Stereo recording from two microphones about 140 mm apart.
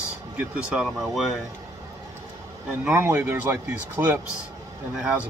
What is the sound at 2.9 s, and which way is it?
Speech, 20° right (ahead or behind).